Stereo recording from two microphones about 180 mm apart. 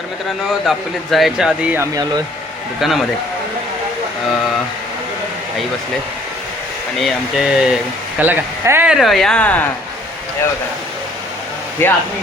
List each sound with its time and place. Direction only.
0.6 s speech: centre (ahead or behind)
1.8 s speech: 20° right (ahead or behind)
2.8 s speech: centre (ahead or behind)
7.0 s speech: centre (ahead or behind)
11.8 s speech: 10° left (ahead or behind)